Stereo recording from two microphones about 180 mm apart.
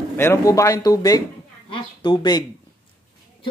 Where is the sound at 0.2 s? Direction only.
15° left (ahead or behind).